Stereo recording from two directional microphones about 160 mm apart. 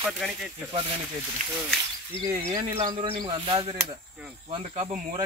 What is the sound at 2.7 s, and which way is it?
Speech, 30° right (ahead or behind).